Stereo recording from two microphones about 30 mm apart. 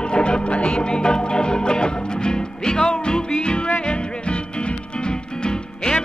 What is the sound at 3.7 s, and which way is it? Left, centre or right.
Music, left.